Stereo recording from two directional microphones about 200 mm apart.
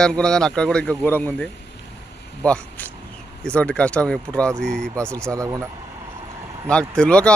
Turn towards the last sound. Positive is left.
turn(degrees=5)  # may be behind; listen again after turning